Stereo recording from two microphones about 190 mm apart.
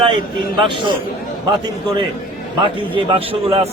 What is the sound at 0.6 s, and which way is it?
A man's voice, 25° right (ahead or behind).